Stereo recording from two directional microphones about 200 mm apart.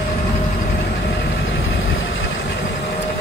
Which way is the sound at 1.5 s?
75° left (ahead or behind).